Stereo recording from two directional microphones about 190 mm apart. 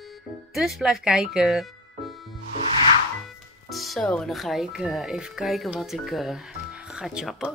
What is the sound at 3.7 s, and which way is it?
Speech, centre (ahead or behind).